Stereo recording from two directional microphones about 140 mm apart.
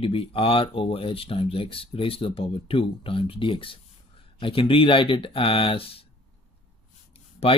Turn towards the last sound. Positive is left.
turn(degrees=45)  # may be behind; listen again after turning